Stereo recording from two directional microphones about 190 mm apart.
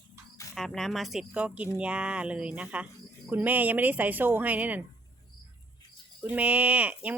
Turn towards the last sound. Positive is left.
turn(degrees=-5)  # may be behind; listen again after turning